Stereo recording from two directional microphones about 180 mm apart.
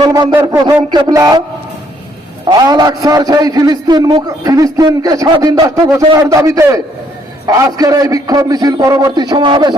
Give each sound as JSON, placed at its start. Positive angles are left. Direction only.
{"t": 0.0, "sound": "a man's voice", "side_deg": -20}
{"t": 2.5, "sound": "a man's voice", "side_deg": -20}